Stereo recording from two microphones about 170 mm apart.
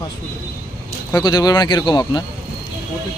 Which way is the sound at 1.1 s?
25° left (ahead or behind).